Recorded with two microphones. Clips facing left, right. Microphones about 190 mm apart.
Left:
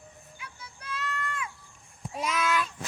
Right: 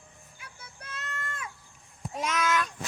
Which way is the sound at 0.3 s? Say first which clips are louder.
Left 1 dB; 50° right (ahead or behind).